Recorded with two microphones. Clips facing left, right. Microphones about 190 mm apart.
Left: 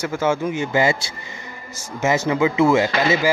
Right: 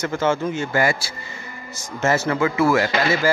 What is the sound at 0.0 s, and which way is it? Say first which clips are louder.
Speech: even; 10° left (ahead or behind).